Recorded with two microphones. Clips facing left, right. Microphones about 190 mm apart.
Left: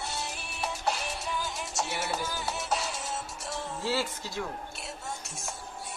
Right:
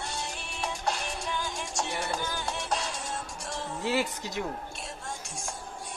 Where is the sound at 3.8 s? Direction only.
20° right (ahead or behind).